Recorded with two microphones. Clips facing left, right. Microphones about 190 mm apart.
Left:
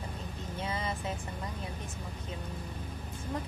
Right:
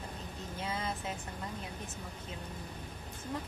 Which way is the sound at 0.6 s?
Centre (ahead or behind).